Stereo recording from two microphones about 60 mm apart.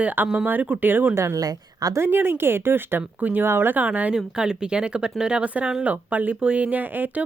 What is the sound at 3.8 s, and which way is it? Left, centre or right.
Speech, right.